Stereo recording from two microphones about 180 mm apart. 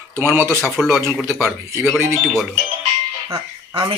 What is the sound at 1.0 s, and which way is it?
Speech, 15° right (ahead or behind).